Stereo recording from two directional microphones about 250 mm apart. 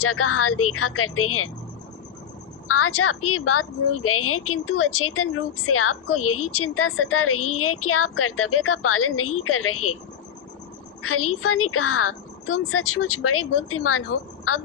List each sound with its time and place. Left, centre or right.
0.0 s a woman's voice: left
2.6 s a woman's voice: left
11.0 s a woman's voice: left